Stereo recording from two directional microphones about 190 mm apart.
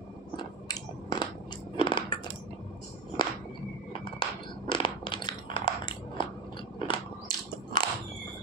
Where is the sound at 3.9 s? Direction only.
25° left (ahead or behind).